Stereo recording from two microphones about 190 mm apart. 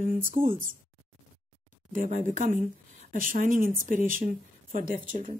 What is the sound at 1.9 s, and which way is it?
Speech, 45° right (ahead or behind).